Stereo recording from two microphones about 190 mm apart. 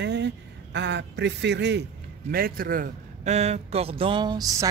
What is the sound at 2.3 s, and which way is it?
A man's voice, 50° right (ahead or behind).